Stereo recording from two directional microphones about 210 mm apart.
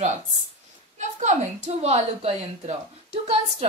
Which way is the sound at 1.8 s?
30° right (ahead or behind).